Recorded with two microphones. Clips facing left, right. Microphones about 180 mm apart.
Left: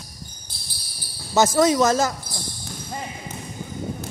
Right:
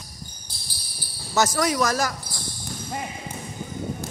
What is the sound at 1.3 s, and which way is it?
Speech, 20° left (ahead or behind).